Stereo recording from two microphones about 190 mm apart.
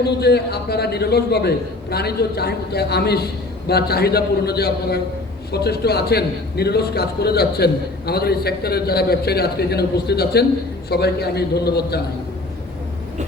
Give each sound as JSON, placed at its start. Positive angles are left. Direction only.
{"t": 0.0, "sound": "a man's voice", "side_deg": 60}